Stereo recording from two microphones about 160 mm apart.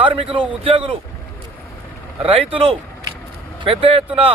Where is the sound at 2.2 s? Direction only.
35° right (ahead or behind).